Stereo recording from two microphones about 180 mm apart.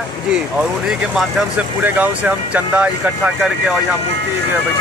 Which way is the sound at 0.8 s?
5° right (ahead or behind).